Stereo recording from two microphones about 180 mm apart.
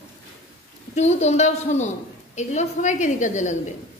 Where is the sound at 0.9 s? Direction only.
40° left (ahead or behind).